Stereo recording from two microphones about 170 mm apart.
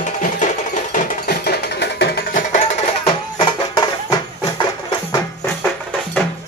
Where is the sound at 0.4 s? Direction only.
45° left (ahead or behind).